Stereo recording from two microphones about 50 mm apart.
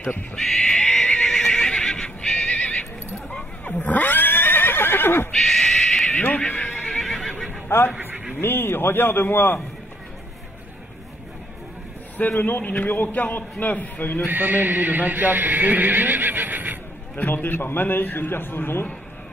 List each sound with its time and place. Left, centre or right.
0.4 s neigh: centre; by 5.3 s left
5.3 s neigh: centre
6.5 s neigh: left
7.0 s neigh: centre
7.6 s a man's voice: left
12.2 s a man's voice: left
14.2 s speech: right
17.1 s a man's voice: left